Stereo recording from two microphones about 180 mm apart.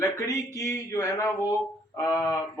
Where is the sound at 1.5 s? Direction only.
20° left (ahead or behind).